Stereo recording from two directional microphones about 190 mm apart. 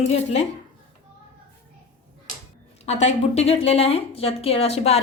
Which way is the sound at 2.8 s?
35° left (ahead or behind).